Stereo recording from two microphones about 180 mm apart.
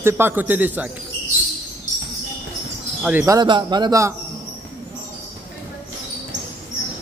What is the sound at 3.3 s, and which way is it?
Speech, 25° right (ahead or behind).